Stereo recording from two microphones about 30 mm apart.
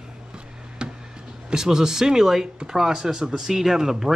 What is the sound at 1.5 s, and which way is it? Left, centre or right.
Speech, right.